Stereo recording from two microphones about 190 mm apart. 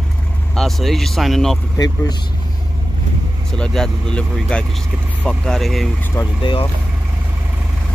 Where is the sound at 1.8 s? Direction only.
20° left (ahead or behind).